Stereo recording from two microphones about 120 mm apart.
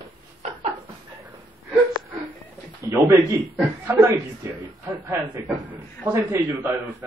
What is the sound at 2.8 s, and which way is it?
A man's voice, 25° right (ahead or behind).